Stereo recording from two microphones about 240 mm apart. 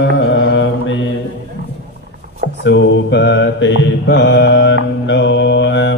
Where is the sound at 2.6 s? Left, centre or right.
Left.